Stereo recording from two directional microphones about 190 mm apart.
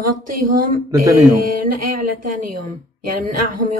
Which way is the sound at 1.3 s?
50° right (ahead or behind).